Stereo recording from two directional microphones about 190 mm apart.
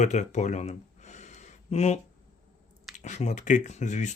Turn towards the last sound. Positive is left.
turn(degrees=40)  # may be behind; listen again after turning